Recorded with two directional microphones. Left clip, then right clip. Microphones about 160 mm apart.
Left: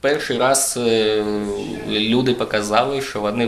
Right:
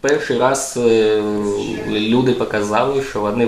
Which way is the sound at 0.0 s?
25° left (ahead or behind).